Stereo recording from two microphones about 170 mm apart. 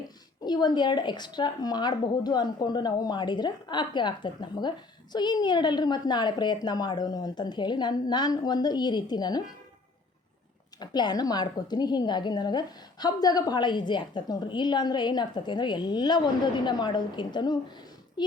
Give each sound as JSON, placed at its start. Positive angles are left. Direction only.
{"t": 0.4, "sound": "a woman's voice", "side_deg": 25}
{"t": 10.8, "sound": "a woman's voice", "side_deg": 25}